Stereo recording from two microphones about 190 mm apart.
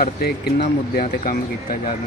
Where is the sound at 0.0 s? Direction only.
55° left (ahead or behind).